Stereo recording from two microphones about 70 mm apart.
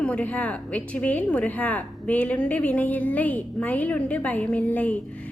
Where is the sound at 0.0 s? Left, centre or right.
Centre.